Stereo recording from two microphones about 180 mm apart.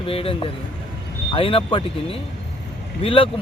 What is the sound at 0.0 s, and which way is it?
Speech, 30° left (ahead or behind).